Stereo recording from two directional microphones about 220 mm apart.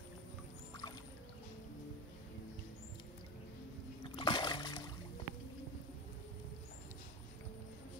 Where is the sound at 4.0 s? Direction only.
20° left (ahead or behind).